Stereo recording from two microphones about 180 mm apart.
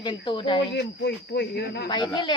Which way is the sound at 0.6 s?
70° left (ahead or behind).